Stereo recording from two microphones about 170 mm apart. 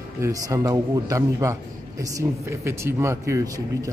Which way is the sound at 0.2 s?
20° right (ahead or behind).